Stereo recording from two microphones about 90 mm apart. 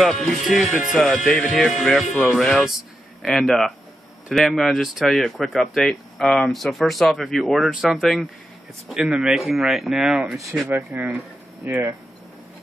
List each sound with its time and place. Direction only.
0.0 s speech: centre (ahead or behind)
10.9 s speech: 20° right (ahead or behind)